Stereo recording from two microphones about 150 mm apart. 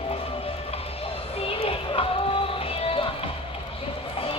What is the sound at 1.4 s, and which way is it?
Music, 40° left (ahead or behind).